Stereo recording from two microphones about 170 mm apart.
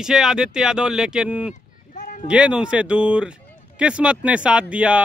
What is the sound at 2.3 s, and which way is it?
Speech, 5° right (ahead or behind).